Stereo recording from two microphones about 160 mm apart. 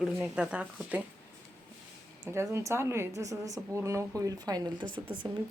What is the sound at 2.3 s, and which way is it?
A woman's voice, 15° right (ahead or behind).